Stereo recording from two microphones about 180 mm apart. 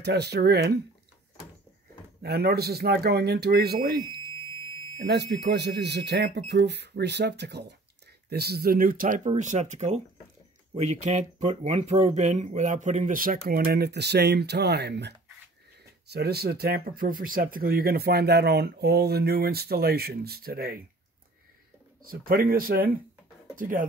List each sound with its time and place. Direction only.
0.0 s speech: 65° right (ahead or behind)
2.2 s speech: 60° right (ahead or behind)
5.0 s speech: 70° right (ahead or behind)
22.0 s speech: 55° right (ahead or behind)